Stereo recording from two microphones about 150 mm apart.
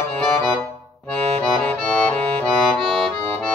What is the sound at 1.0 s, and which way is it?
Accordion, centre (ahead or behind).